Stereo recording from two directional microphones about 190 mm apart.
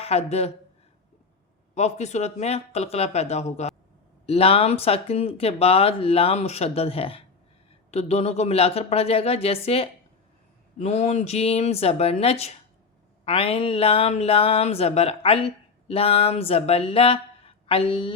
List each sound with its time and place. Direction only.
0.0 s speech: 35° left (ahead or behind)
1.7 s speech: 35° left (ahead or behind)